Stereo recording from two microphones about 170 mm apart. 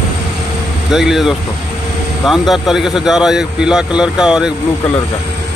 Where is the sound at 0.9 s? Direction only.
Centre (ahead or behind).